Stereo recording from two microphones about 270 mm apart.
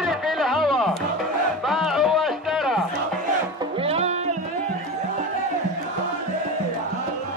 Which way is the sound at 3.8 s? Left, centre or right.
Right.